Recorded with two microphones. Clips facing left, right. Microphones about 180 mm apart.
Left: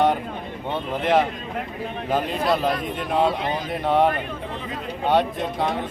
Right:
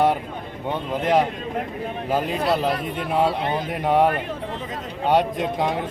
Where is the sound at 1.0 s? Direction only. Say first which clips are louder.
Even; 10° right (ahead or behind).